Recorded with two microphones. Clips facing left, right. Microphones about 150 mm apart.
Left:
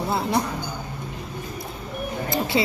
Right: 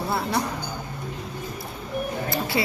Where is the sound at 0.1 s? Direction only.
20° left (ahead or behind).